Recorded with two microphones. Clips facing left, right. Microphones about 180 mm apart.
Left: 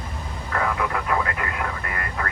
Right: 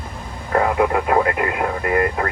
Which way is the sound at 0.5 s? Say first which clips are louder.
Right 8 dB; 50° right (ahead or behind).